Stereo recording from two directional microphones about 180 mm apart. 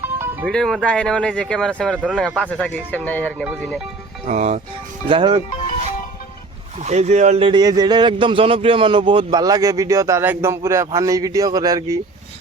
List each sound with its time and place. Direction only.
0.4 s speech: centre (ahead or behind)
4.3 s speech: 40° right (ahead or behind)
5.0 s speech: 30° right (ahead or behind)
6.7 s speech: 40° right (ahead or behind); by 11.9 s 20° right (ahead or behind)